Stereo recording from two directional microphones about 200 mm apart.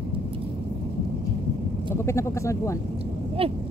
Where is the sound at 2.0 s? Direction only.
15° left (ahead or behind).